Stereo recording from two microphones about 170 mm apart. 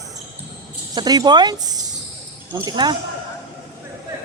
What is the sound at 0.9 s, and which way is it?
Speech, 25° right (ahead or behind).